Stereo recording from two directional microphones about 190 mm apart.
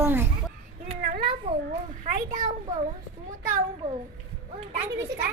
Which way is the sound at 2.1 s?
45° right (ahead or behind).